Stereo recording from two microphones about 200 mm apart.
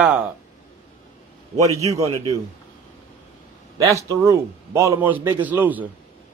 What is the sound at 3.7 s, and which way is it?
A man's voice, 15° right (ahead or behind).